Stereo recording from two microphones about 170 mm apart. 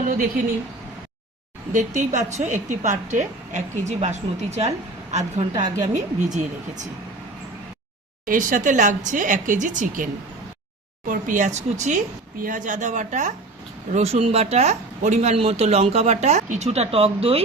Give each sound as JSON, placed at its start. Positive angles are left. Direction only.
{"t": 0.1, "sound": "speech", "side_deg": -55}
{"t": 1.7, "sound": "a woman's voice", "side_deg": -45}
{"t": 5.6, "sound": "speech", "side_deg": -25}
{"t": 5.9, "sound": "a woman's voice", "side_deg": -45}
{"t": 8.3, "sound": "a woman's voice", "side_deg": -50}